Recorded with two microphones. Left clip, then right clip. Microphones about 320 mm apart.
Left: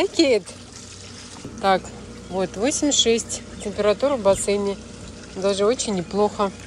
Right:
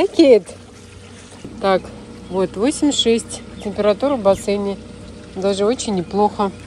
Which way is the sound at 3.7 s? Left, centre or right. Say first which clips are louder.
Right 3 dB; centre.